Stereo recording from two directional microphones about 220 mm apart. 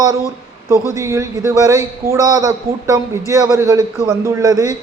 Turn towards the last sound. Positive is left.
turn(degrees=-15)  # may be behind; listen again after turning